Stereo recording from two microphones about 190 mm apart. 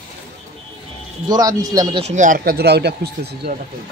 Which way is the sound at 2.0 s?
40° right (ahead or behind).